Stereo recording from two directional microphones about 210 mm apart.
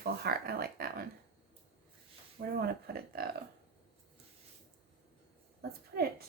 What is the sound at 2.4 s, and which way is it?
Speech, 50° right (ahead or behind).